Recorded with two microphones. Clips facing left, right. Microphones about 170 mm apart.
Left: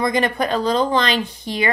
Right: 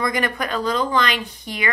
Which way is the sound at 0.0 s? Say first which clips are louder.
Left 4 dB; 25° left (ahead or behind).